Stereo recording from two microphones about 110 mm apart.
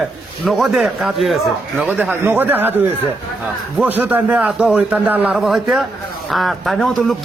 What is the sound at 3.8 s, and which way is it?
A man's voice, 15° right (ahead or behind).